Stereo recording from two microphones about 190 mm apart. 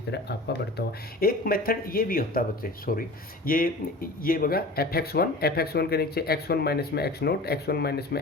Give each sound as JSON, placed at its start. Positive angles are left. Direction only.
{"t": 0.1, "sound": "speech", "side_deg": 60}